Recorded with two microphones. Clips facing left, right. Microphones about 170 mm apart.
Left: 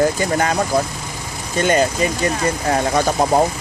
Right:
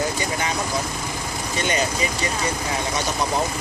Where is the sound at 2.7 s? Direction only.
55° left (ahead or behind).